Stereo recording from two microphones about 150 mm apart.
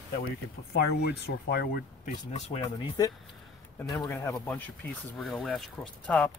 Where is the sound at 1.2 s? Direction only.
90° left.